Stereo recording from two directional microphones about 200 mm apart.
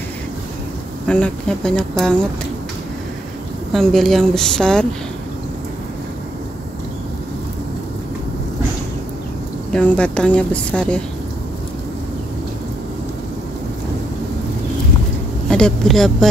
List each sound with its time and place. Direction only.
1.0 s speech: 5° left (ahead or behind)
3.7 s speech: centre (ahead or behind)
9.7 s speech: 5° left (ahead or behind)
15.4 s speech: 5° left (ahead or behind)